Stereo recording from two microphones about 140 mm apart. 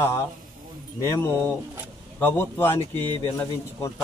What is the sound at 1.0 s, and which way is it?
A man's voice, 15° left (ahead or behind).